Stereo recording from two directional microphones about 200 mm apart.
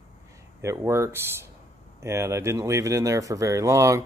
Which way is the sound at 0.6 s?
15° right (ahead or behind).